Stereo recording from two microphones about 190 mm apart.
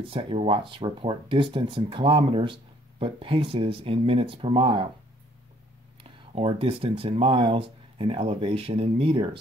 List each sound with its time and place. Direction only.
0.1 s speech: 30° right (ahead or behind)
6.0 s speech: 30° right (ahead or behind)